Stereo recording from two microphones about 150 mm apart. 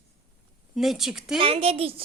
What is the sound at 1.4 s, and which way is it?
Speech, 40° right (ahead or behind).